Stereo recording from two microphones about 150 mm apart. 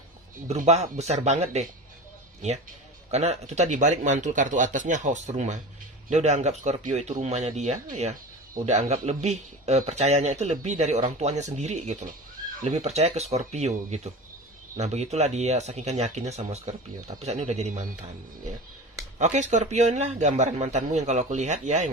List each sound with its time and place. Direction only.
0.6 s a man's voice: 50° right (ahead or behind)
3.1 s a man's voice: 50° right (ahead or behind)
19.2 s a man's voice: 50° right (ahead or behind)